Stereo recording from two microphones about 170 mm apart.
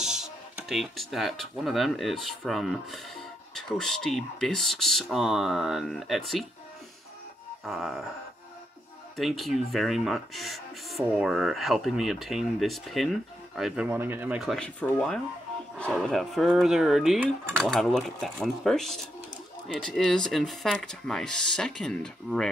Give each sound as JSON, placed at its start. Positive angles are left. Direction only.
{"t": 0.0, "sound": "speech", "side_deg": -5}
{"t": 7.6, "sound": "speech", "side_deg": 0}
{"t": 9.1, "sound": "speech", "side_deg": 0}
{"t": 13.8, "sound": "speech", "side_deg": -10}
{"t": 14.4, "sound": "speech", "side_deg": 5}